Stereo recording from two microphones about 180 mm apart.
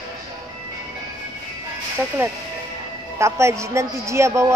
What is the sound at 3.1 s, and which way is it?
A woman's voice, 15° right (ahead or behind).